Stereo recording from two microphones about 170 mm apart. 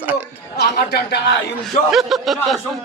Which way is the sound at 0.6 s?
70° left (ahead or behind).